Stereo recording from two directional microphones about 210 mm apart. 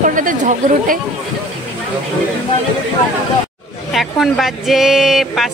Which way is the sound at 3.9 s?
Centre (ahead or behind).